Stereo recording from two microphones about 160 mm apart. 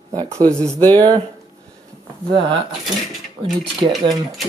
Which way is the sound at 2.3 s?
30° right (ahead or behind).